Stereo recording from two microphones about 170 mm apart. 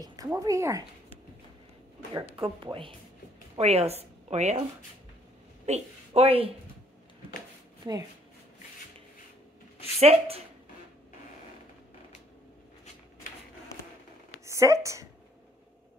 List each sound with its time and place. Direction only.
0.0 s a woman's voice: 20° right (ahead or behind)
2.3 s a woman's voice: 30° right (ahead or behind)
5.7 s a woman's voice: 35° right (ahead or behind)
9.9 s a woman's voice: 35° right (ahead or behind)
14.4 s a woman's voice: 15° right (ahead or behind)